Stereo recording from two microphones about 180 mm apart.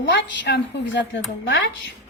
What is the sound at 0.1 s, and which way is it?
Speech, 75° left (ahead or behind).